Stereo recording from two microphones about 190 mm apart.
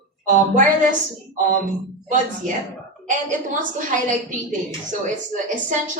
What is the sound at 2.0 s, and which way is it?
A woman's voice, 40° right (ahead or behind).